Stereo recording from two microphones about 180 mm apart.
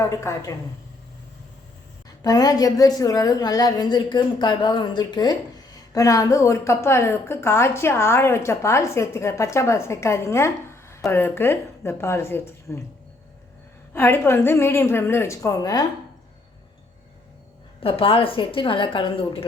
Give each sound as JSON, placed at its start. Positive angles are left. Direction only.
{"t": 0.0, "sound": "a woman's voice", "side_deg": 15}
{"t": 2.0, "sound": "a woman's voice", "side_deg": 20}
{"t": 13.9, "sound": "a woman's voice", "side_deg": 15}
{"t": 17.8, "sound": "a woman's voice", "side_deg": 30}